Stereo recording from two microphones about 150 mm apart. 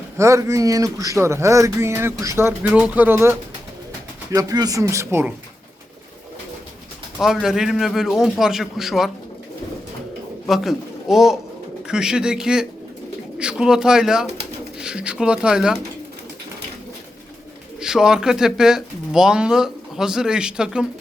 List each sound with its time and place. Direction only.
0.2 s speech: 20° right (ahead or behind)
7.4 s speech: centre (ahead or behind)
10.4 s a man's voice: centre (ahead or behind)
17.7 s speech: 5° right (ahead or behind)